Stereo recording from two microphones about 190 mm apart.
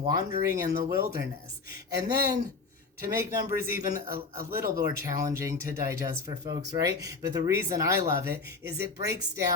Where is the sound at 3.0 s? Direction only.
15° right (ahead or behind).